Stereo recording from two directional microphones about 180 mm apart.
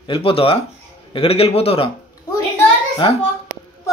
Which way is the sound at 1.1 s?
30° left (ahead or behind).